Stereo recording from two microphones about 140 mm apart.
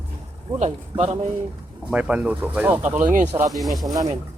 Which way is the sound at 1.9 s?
5° right (ahead or behind).